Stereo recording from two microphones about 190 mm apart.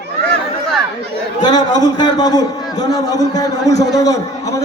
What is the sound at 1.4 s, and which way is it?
A man's voice, 20° left (ahead or behind).